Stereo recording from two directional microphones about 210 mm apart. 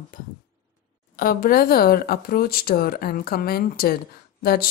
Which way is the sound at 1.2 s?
40° left (ahead or behind).